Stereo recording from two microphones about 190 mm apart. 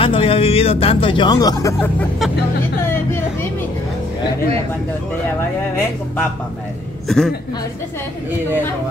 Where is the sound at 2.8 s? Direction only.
10° left (ahead or behind).